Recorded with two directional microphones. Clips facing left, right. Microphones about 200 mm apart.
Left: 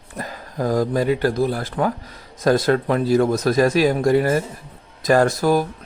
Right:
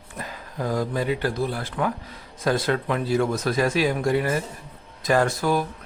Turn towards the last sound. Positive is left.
turn(degrees=40)  # may be behind; listen again after turning